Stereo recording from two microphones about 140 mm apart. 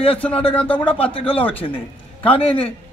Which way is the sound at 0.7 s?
40° left (ahead or behind).